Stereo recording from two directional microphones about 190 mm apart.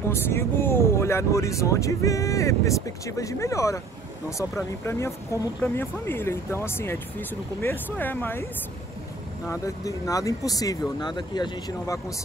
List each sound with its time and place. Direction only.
0.1 s speech: 15° left (ahead or behind)
9.5 s speech: 15° left (ahead or behind)